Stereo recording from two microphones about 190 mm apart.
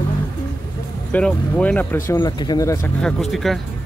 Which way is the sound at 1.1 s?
5° left (ahead or behind).